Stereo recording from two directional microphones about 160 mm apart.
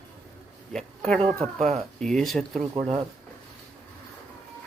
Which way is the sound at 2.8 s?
40° right (ahead or behind).